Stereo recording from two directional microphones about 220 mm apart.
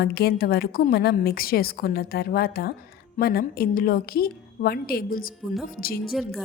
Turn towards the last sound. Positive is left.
turn(degrees=0)  # may be behind; listen again after turning